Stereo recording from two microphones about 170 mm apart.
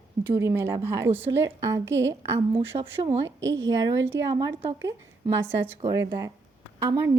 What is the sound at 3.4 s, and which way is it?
Speech, 90° right.